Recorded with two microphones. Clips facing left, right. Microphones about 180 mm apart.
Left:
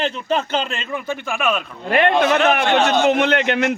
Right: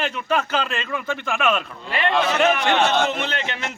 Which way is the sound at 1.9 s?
55° left (ahead or behind).